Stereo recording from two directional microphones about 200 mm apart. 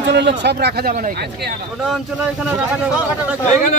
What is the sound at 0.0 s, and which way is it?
Speech, 60° right (ahead or behind).